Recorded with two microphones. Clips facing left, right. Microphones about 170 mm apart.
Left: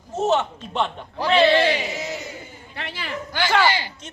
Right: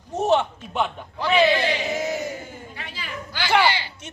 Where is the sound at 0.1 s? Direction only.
15° right (ahead or behind).